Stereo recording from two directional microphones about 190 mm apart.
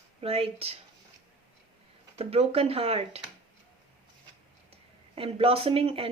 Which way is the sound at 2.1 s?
30° right (ahead or behind).